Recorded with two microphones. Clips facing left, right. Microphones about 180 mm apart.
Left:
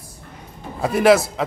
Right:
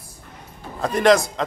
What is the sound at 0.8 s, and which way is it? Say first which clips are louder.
Speech: left 2 dB; 5° left (ahead or behind).